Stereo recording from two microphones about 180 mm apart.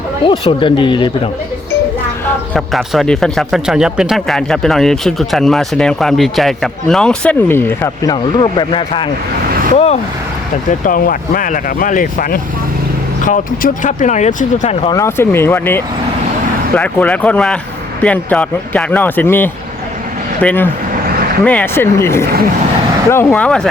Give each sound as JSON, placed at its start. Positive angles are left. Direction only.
{"t": 0.3, "sound": "speech", "side_deg": 25}
{"t": 2.5, "sound": "speech", "side_deg": 0}
{"t": 10.7, "sound": "speech", "side_deg": 50}
{"t": 14.9, "sound": "speech", "side_deg": 15}